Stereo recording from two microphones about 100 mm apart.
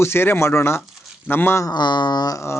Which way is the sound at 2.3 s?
25° left (ahead or behind).